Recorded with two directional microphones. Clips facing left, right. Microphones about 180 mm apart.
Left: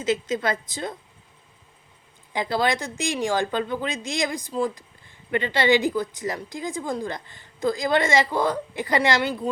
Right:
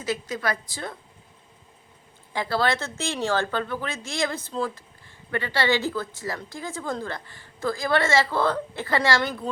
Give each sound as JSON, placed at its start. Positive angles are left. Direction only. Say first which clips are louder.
{"t": 0.0, "sound": "a woman's voice", "louder": "left 4 dB", "side_deg": 20}
{"t": 2.3, "sound": "a woman's voice", "louder": "left 1 dB", "side_deg": 20}